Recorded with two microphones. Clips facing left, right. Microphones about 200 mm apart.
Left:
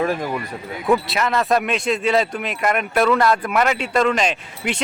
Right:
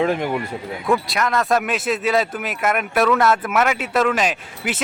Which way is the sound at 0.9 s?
Centre (ahead or behind).